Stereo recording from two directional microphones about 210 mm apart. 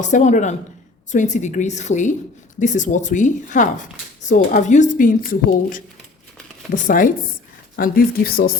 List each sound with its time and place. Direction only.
0.0 s a woman's voice: 35° left (ahead or behind)